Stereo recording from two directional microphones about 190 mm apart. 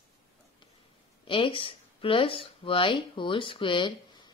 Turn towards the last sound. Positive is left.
turn(degrees=25)  # may be behind; listen again after turning